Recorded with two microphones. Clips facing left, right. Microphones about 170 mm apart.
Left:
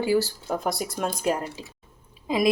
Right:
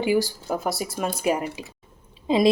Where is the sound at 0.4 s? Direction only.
5° right (ahead or behind).